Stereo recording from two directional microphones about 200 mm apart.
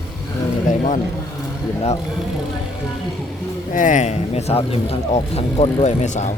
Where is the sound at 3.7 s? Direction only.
40° left (ahead or behind).